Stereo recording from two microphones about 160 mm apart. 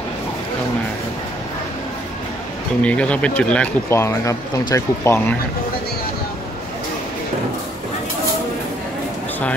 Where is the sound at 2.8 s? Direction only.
5° left (ahead or behind).